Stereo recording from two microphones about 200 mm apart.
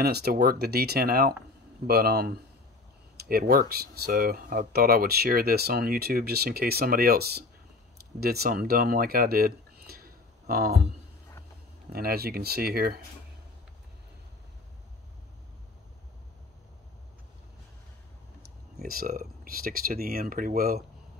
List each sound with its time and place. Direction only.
0.0 s speech: 50° right (ahead or behind)
11.9 s speech: 50° right (ahead or behind)
18.8 s speech: 50° right (ahead or behind)